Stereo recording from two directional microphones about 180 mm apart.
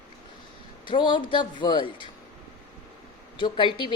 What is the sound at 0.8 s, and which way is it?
A woman's voice, 25° left (ahead or behind).